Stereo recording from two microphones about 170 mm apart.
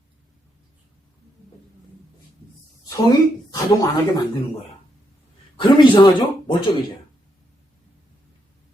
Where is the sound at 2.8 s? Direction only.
20° left (ahead or behind).